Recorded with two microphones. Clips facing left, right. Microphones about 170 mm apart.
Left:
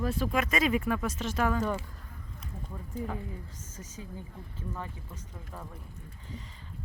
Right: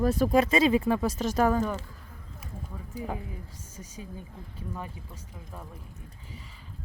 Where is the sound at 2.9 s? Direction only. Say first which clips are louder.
Left 1 dB; 10° right (ahead or behind).